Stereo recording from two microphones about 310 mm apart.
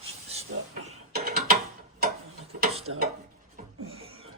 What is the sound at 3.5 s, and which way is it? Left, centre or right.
Beatboxing, centre.